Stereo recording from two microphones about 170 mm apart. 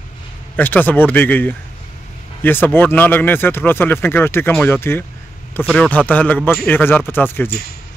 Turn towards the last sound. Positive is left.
turn(degrees=10)  # may be behind; listen again after turning